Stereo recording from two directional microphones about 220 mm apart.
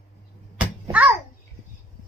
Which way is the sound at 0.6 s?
5° right (ahead or behind).